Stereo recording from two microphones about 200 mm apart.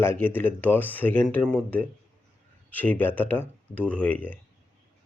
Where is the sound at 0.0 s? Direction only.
10° left (ahead or behind).